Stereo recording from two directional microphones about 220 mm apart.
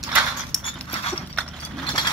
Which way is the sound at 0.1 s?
Centre (ahead or behind).